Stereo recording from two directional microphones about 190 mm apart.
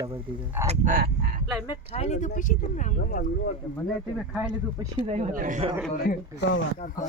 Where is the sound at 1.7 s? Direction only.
35° left (ahead or behind).